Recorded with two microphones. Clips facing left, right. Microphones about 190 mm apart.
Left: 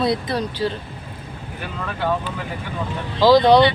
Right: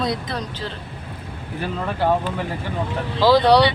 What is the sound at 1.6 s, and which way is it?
Speech, 35° right (ahead or behind).